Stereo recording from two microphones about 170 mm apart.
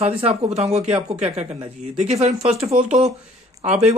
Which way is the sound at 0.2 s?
35° right (ahead or behind).